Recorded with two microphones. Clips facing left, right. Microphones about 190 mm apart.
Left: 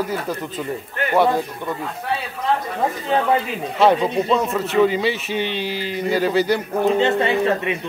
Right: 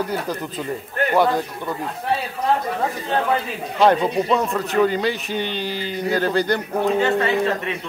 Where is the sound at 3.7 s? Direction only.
Centre (ahead or behind).